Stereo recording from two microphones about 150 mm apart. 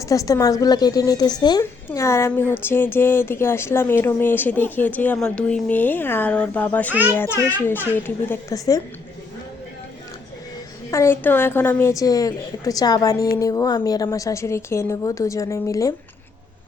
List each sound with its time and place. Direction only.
0.0 s a woman's voice: 20° left (ahead or behind)
10.9 s a woman's voice: 15° left (ahead or behind)